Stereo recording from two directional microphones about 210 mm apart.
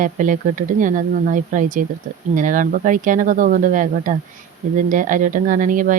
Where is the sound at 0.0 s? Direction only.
40° right (ahead or behind).